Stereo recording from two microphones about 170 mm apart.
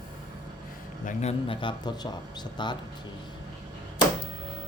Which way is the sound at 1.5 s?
30° left (ahead or behind).